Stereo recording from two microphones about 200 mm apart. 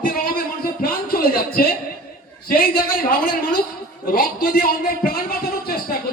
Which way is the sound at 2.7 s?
25° left (ahead or behind).